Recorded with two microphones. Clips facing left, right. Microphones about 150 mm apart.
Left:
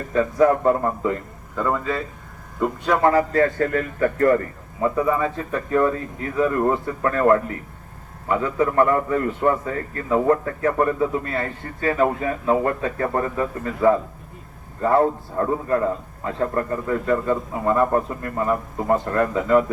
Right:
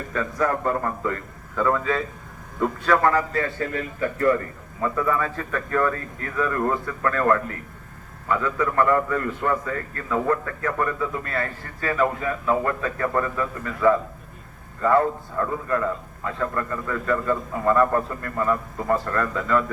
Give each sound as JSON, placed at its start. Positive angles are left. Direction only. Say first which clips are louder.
{"t": 0.1, "sound": "speech", "louder": "left 7 dB", "side_deg": 25}
{"t": 1.5, "sound": "a man's voice", "louder": "right 1 dB", "side_deg": 5}
{"t": 3.0, "sound": "a man's voice", "louder": "left 4 dB", "side_deg": 30}
{"t": 3.4, "sound": "speech", "louder": "left 7 dB", "side_deg": 50}
{"t": 4.8, "sound": "a man's voice", "louder": "left 3 dB", "side_deg": 20}